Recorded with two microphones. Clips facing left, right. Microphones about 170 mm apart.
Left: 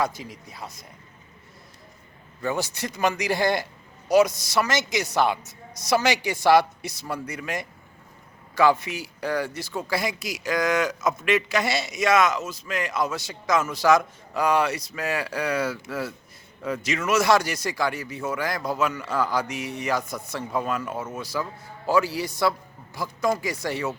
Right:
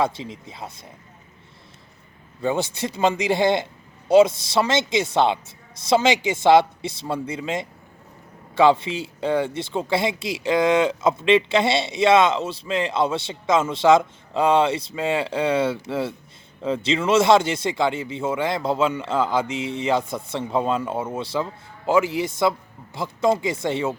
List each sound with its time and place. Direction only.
0.0 s speech: 25° right (ahead or behind)
2.4 s speech: 25° right (ahead or behind)